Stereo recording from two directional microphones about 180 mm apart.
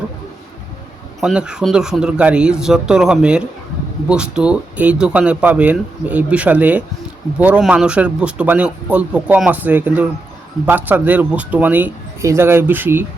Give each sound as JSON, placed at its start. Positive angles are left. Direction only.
{"t": 1.2, "sound": "speech", "side_deg": -5}